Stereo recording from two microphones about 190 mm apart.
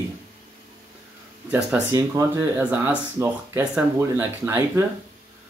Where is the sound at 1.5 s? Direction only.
10° right (ahead or behind).